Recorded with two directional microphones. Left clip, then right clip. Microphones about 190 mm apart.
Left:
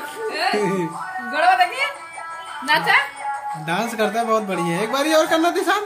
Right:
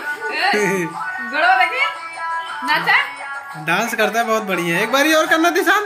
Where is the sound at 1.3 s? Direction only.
65° left (ahead or behind).